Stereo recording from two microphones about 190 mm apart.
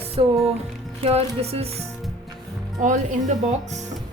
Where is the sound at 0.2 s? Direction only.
25° right (ahead or behind).